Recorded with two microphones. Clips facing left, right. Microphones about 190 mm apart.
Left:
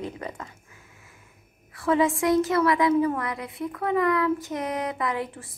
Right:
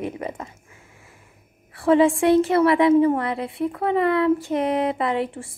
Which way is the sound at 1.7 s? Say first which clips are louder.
Right 6 dB; 30° right (ahead or behind).